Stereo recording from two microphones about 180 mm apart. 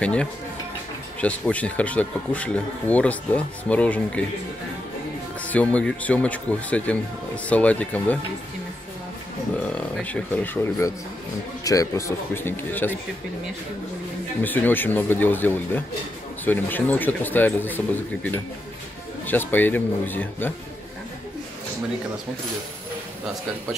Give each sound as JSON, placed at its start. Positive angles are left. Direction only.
{"t": 0.0, "sound": "speech", "side_deg": 5}
{"t": 5.5, "sound": "speech", "side_deg": 10}
{"t": 9.6, "sound": "speech", "side_deg": 5}
{"t": 14.4, "sound": "speech", "side_deg": 10}